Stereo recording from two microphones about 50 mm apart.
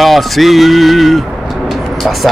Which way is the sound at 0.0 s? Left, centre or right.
Centre.